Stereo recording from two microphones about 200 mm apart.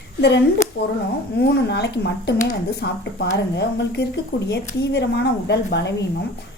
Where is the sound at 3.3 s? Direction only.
55° left (ahead or behind).